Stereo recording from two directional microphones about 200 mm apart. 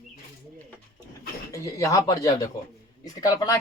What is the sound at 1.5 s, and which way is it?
Speech, 15° left (ahead or behind).